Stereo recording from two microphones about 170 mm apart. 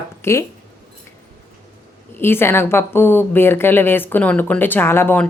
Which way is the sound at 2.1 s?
15° left (ahead or behind).